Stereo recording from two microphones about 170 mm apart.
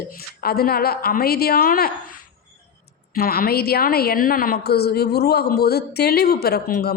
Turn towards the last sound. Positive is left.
turn(degrees=60)  # may be behind; listen again after turning